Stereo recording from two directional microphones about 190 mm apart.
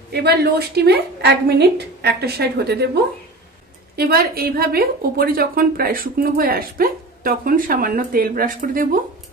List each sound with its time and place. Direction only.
0.1 s a woman's voice: 60° right (ahead or behind)